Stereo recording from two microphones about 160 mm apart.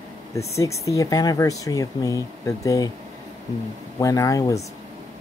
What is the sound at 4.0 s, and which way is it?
Speech, 20° left (ahead or behind).